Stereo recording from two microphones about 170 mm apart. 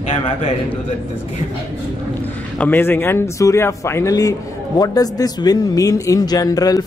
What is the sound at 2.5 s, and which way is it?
Speech, 10° left (ahead or behind).